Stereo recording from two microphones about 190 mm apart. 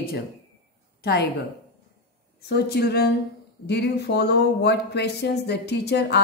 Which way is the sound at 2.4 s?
55° left (ahead or behind).